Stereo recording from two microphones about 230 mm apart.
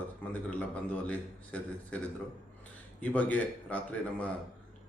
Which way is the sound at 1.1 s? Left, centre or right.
Centre.